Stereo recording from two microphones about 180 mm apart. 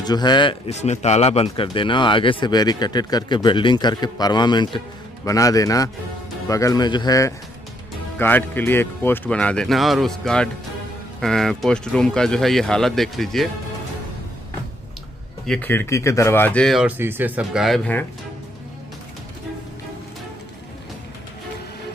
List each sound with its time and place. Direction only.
0.0 s a man's voice: 25° left (ahead or behind); by 13.5 s centre (ahead or behind)
15.4 s speech: 5° left (ahead or behind)